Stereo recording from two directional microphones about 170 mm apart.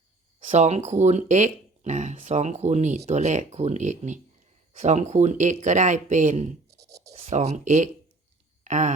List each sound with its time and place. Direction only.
0.5 s speech: 45° right (ahead or behind)
6.7 s scratch: 20° right (ahead or behind)
7.1 s speech: 40° right (ahead or behind)